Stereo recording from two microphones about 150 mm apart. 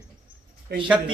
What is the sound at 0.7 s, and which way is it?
Speech, 90° right.